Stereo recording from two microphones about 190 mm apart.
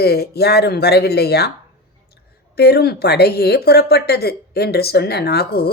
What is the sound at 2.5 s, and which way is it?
Speech, 55° left (ahead or behind).